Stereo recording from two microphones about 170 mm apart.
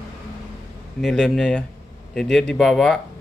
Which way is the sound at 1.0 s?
Centre (ahead or behind).